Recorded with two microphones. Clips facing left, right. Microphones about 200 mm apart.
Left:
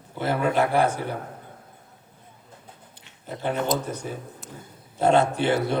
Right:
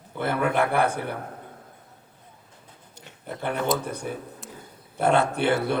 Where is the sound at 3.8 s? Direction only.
60° right (ahead or behind).